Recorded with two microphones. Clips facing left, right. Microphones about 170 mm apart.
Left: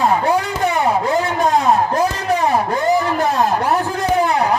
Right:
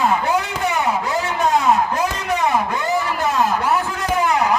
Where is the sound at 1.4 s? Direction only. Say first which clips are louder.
Even; 35° left (ahead or behind).